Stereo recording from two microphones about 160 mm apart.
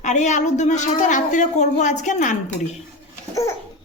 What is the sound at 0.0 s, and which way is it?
A woman's voice, 50° left (ahead or behind).